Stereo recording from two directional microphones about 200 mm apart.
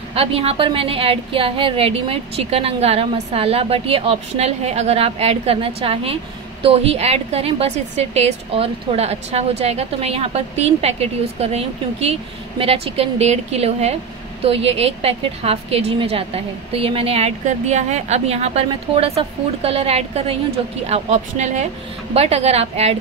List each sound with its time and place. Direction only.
0.1 s a woman's voice: 30° right (ahead or behind)